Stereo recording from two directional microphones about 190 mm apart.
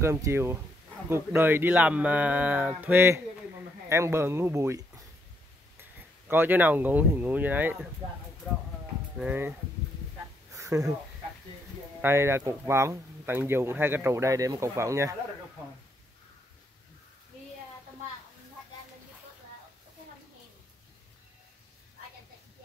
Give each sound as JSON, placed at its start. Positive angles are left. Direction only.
{"t": 0.0, "sound": "speech", "side_deg": -15}
{"t": 9.2, "sound": "speech", "side_deg": -10}
{"t": 10.5, "sound": "a sound", "side_deg": -15}
{"t": 12.0, "sound": "speech", "side_deg": -15}